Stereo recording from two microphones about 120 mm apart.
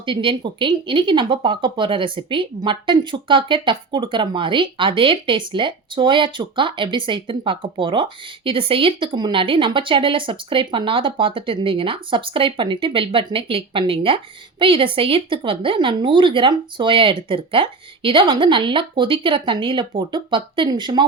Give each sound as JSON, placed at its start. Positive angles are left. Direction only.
{"t": 0.0, "sound": "speech", "side_deg": -45}